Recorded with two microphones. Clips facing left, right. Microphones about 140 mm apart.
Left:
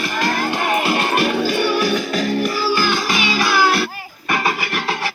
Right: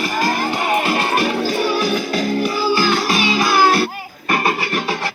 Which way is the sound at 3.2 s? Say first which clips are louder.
Right 2 dB; 25° right (ahead or behind).